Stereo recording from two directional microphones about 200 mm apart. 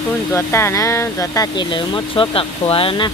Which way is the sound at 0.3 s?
15° left (ahead or behind).